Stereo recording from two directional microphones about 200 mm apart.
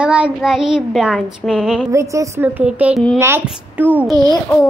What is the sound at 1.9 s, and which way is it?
A child's voice, 15° right (ahead or behind).